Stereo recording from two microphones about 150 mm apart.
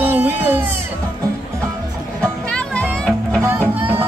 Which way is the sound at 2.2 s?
5° left (ahead or behind).